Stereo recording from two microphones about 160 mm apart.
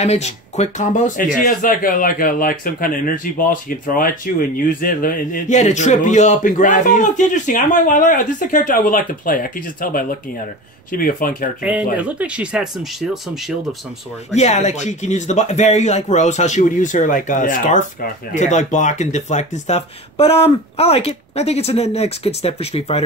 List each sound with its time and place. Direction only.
0.0 s speech: 45° left (ahead or behind); by 11.5 s 60° left (ahead or behind)
11.6 s speech: 10° right (ahead or behind)
14.3 s speech: 45° left (ahead or behind)